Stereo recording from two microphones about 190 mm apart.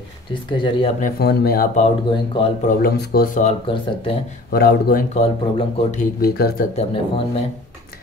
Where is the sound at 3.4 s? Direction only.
25° left (ahead or behind).